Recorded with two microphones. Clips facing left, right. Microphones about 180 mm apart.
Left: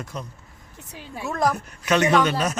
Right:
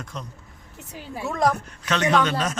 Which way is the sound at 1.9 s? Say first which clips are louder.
Left 2 dB; 10° left (ahead or behind).